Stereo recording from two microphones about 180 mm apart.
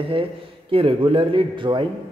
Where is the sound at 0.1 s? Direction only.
30° right (ahead or behind).